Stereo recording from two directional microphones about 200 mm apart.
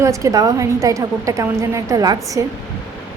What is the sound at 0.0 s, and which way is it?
A woman's voice, 15° right (ahead or behind).